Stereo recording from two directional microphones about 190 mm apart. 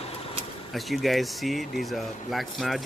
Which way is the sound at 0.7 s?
Centre (ahead or behind).